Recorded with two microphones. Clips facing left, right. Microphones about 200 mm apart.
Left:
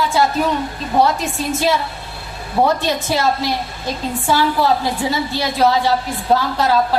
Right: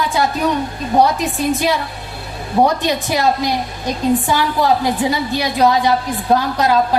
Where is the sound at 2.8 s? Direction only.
15° right (ahead or behind).